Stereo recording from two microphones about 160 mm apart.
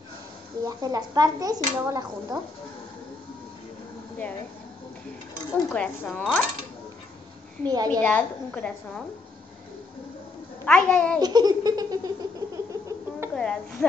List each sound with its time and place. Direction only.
0.7 s speech: 25° right (ahead or behind)
5.7 s speech: 5° left (ahead or behind)
7.6 s speech: 25° right (ahead or behind)
8.0 s a woman's voice: 10° left (ahead or behind)
10.6 s a woman's voice: 5° left (ahead or behind)
11.1 s baby laughter: 25° right (ahead or behind)
13.4 s speech: 5° left (ahead or behind)